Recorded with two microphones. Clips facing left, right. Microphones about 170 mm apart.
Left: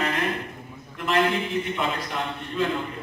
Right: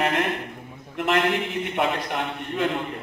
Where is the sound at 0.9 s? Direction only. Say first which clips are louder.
Right 1 dB; 70° right (ahead or behind).